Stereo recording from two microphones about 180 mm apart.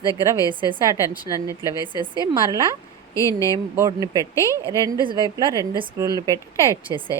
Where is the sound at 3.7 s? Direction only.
20° right (ahead or behind).